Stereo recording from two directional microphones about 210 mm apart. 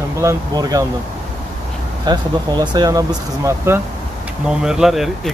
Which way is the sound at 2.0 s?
20° right (ahead or behind).